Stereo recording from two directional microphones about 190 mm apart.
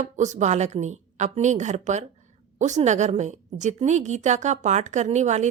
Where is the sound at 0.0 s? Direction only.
40° right (ahead or behind).